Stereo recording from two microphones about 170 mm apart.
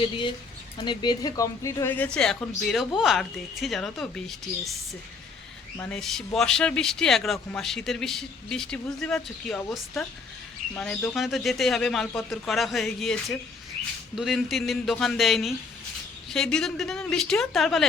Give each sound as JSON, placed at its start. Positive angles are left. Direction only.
{"t": 0.0, "sound": "speech", "side_deg": 30}
{"t": 5.8, "sound": "speech", "side_deg": 5}